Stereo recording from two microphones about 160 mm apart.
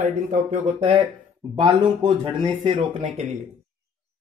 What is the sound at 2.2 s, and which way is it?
Speech, 30° right (ahead or behind).